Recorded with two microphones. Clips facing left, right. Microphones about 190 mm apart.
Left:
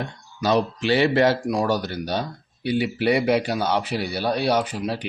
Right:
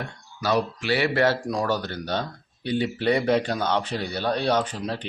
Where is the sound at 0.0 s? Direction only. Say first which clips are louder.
Left 4 dB; 20° left (ahead or behind).